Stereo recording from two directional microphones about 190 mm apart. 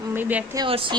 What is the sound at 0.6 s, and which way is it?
Speech, 25° right (ahead or behind).